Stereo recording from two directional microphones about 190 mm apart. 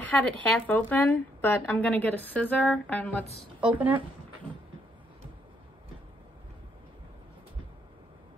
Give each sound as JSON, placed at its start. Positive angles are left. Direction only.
{"t": 0.0, "sound": "speech", "side_deg": 10}
{"t": 3.6, "sound": "speech", "side_deg": -10}